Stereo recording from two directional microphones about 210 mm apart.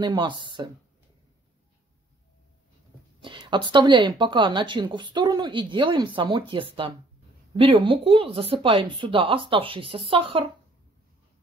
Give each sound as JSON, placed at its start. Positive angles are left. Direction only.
{"t": 0.0, "sound": "speech", "side_deg": -20}
{"t": 3.2, "sound": "speech", "side_deg": -25}